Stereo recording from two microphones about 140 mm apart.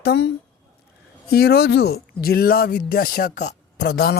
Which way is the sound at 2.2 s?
90° left.